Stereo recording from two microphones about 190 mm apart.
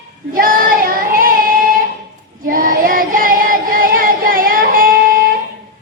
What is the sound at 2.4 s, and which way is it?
Music, 45° right (ahead or behind).